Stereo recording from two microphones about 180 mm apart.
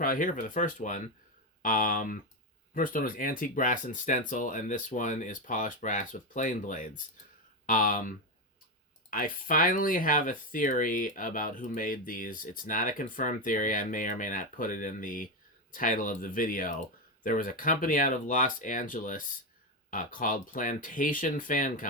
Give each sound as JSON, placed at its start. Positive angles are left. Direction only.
{"t": 0.0, "sound": "speech", "side_deg": 50}